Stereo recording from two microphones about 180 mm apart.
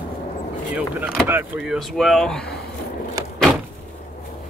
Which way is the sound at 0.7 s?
5° right (ahead or behind).